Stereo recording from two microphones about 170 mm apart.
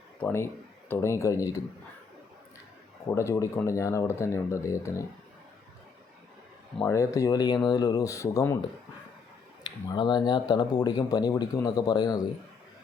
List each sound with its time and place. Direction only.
0.2 s speech: 15° left (ahead or behind)
3.2 s speech: 15° left (ahead or behind)
6.7 s speech: 15° left (ahead or behind)
9.6 s speech: 25° left (ahead or behind)